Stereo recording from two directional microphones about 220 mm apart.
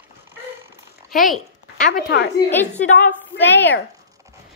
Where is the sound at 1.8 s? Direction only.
45° left (ahead or behind).